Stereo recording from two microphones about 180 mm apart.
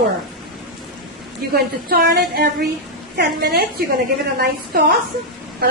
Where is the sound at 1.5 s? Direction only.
60° right (ahead or behind).